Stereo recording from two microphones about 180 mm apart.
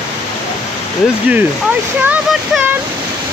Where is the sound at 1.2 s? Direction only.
10° right (ahead or behind).